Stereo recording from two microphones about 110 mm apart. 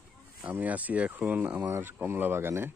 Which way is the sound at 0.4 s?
15° right (ahead or behind).